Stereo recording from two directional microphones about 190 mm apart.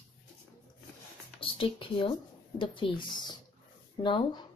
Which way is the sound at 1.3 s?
30° left (ahead or behind).